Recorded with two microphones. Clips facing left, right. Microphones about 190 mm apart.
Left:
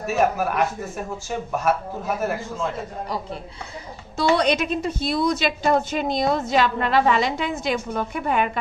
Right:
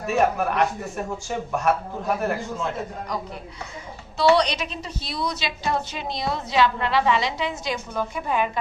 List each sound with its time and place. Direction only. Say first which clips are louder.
0.0 s a man's voice: even; centre (ahead or behind)
4.2 s a woman's voice: even; 50° left (ahead or behind)